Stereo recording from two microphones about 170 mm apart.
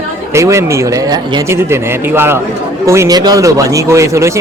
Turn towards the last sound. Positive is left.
turn(degrees=-15)  # may be behind; listen again after turning